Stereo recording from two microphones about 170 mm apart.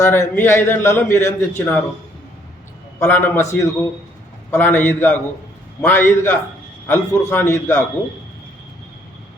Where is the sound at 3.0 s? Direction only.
10° left (ahead or behind).